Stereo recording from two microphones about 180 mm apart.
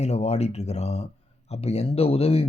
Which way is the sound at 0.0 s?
35° left (ahead or behind).